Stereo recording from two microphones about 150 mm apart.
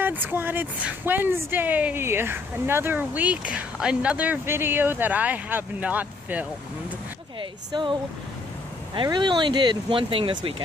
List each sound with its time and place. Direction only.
0.0 s speech: 15° right (ahead or behind)
7.3 s speech: 30° right (ahead or behind)